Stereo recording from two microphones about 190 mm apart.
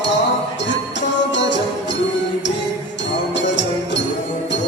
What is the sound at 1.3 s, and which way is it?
Music, 70° left (ahead or behind).